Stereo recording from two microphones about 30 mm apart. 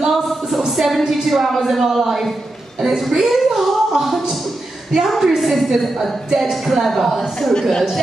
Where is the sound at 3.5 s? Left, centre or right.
Centre.